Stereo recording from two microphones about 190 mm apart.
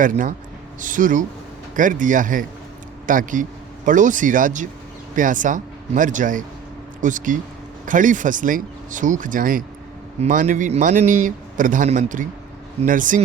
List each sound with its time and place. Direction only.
0.0 s a man's voice: 45° right (ahead or behind)